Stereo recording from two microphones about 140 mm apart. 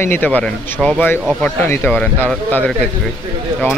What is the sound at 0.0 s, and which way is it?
Speech, 15° left (ahead or behind).